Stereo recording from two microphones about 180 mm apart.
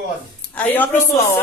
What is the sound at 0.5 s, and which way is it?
Speech, 10° left (ahead or behind).